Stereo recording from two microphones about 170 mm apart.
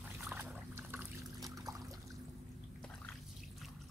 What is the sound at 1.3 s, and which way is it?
Trickle, 20° right (ahead or behind).